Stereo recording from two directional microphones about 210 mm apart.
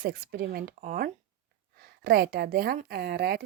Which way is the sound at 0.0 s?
45° right (ahead or behind).